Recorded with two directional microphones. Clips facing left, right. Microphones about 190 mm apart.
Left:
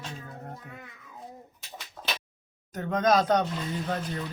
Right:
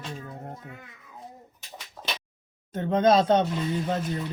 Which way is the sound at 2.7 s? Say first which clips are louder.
Right 3 dB; 25° right (ahead or behind).